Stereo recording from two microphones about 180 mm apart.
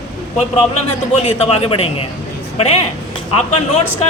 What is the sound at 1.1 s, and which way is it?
Speech, 35° left (ahead or behind).